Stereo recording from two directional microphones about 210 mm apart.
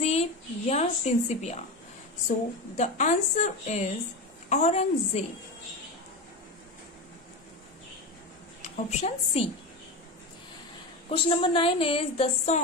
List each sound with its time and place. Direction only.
0.0 s a sound: 30° left (ahead or behind)
2.2 s a woman's voice: 35° left (ahead or behind)
8.6 s a woman's voice: 30° left (ahead or behind)
11.1 s a woman's voice: 25° left (ahead or behind)